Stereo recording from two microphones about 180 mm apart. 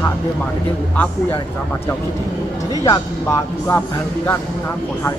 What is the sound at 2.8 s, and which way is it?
Speech, 20° left (ahead or behind).